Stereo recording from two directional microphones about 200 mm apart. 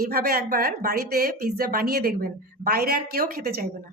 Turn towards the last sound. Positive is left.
turn(degrees=-45)  # may be behind; listen again after turning